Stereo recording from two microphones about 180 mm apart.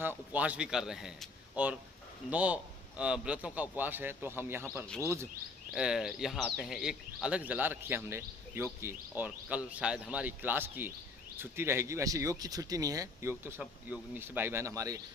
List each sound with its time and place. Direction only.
0.0 s a man's voice: 10° right (ahead or behind)